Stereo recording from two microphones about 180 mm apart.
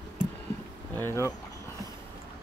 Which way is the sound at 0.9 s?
15° left (ahead or behind).